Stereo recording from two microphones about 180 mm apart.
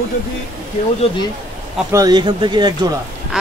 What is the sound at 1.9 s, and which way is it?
Speech, 20° right (ahead or behind).